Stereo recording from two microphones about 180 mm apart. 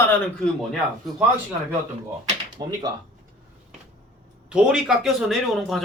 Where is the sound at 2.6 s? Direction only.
20° right (ahead or behind).